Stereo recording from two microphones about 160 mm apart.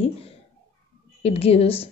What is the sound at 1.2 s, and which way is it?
Speech, 40° left (ahead or behind).